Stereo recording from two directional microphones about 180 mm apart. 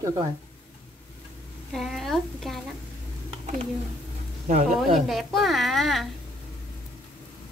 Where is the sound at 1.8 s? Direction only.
Centre (ahead or behind).